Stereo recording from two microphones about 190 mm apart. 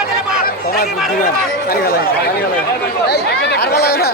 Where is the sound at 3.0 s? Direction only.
60° left (ahead or behind).